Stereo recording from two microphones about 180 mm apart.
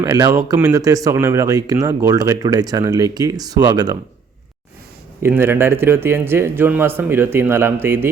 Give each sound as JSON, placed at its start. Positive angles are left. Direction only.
{"t": 0.0, "sound": "speech", "side_deg": -20}
{"t": 5.2, "sound": "speech", "side_deg": -10}